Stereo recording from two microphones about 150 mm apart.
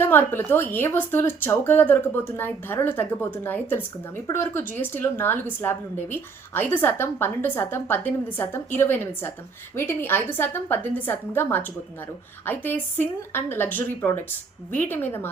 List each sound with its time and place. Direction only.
0.0 s a woman's voice: 15° left (ahead or behind)